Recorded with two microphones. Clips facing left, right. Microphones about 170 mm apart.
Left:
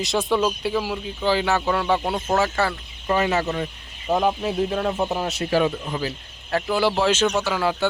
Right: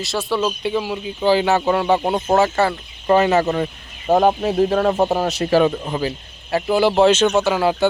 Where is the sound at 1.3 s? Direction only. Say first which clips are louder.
Right 5 dB; 25° right (ahead or behind); by 3.7 s 45° right (ahead or behind).